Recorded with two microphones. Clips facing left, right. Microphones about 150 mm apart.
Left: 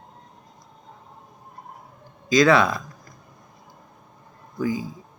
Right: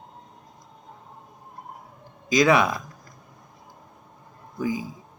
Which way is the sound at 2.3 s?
15° right (ahead or behind).